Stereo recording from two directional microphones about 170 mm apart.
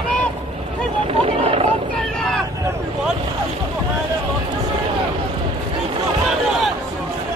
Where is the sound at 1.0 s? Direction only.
35° right (ahead or behind).